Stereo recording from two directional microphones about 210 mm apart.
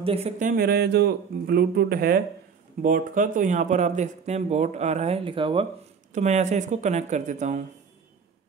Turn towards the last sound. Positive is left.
turn(degrees=-35)  # may be behind; listen again after turning